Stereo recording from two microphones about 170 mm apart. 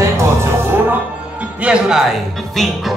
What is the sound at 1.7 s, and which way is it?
Music, 5° right (ahead or behind).